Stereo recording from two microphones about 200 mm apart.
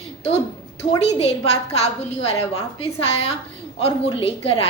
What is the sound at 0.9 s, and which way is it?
A woman's voice, 30° left (ahead or behind).